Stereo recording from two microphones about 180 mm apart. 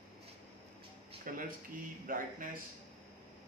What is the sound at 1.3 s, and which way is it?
Speech, 50° right (ahead or behind).